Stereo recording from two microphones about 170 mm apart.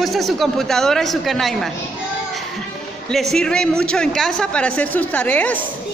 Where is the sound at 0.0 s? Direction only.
Centre (ahead or behind).